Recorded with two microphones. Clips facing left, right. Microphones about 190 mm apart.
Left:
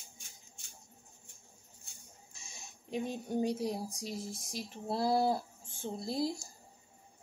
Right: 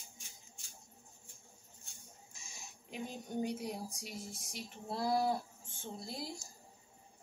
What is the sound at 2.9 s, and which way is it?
A woman's voice, 35° left (ahead or behind).